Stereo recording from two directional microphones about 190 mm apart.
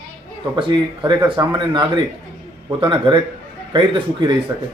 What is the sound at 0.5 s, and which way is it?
A man's voice, 25° right (ahead or behind).